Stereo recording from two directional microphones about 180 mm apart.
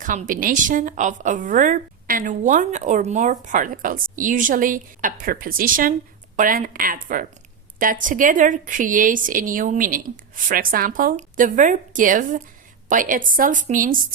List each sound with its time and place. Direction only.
0.0 s a woman's voice: 45° right (ahead or behind)